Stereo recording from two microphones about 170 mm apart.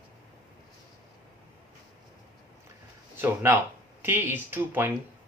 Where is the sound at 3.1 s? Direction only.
15° right (ahead or behind).